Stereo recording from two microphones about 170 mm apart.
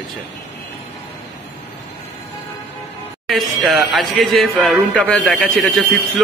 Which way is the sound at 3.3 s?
Centre (ahead or behind).